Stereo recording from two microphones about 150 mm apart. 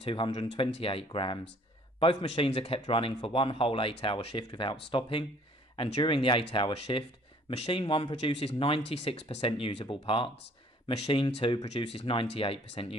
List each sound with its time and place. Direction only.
0.0 s speech: 35° left (ahead or behind)